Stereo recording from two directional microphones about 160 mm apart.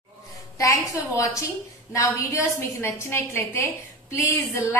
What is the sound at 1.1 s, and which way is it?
A woman's voice, 20° left (ahead or behind).